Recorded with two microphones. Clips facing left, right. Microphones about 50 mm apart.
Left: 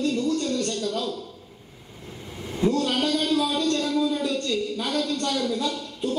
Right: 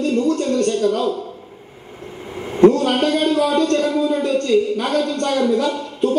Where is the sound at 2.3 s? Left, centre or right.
Right.